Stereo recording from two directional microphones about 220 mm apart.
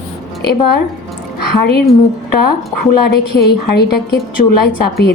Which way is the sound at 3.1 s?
45° left (ahead or behind).